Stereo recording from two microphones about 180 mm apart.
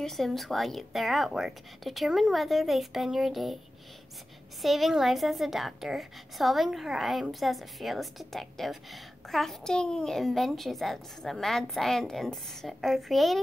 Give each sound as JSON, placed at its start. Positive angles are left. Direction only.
{"t": 0.0, "sound": "a woman's voice", "side_deg": 0}
{"t": 4.6, "sound": "a woman's voice", "side_deg": 0}